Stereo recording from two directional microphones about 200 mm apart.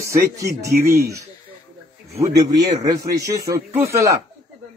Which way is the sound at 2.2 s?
15° right (ahead or behind).